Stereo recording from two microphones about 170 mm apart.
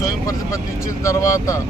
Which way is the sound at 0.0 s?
20° left (ahead or behind).